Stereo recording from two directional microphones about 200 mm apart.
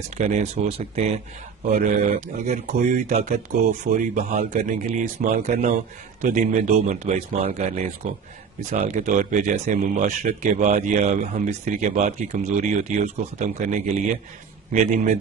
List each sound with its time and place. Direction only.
0.2 s speech: 35° right (ahead or behind)